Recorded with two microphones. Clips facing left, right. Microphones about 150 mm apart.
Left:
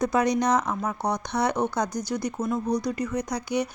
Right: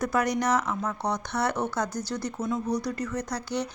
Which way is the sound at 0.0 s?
20° left (ahead or behind).